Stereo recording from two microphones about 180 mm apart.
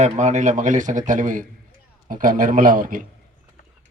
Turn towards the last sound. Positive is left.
turn(degrees=-50)  # may be behind; listen again after turning